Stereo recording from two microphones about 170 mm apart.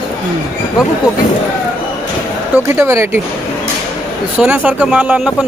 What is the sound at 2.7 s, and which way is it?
Speech, 15° right (ahead or behind).